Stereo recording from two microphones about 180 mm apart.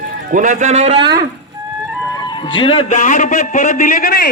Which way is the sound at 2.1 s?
25° left (ahead or behind).